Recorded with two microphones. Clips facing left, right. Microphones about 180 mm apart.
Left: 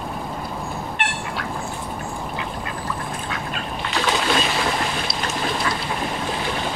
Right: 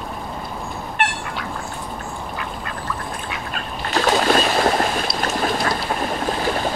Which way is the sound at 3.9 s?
45° right (ahead or behind).